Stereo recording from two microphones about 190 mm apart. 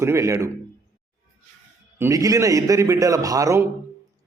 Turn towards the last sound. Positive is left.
turn(degrees=-15)  # may be behind; listen again after turning